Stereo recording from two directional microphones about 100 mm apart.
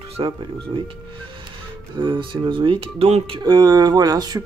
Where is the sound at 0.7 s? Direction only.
50° right (ahead or behind).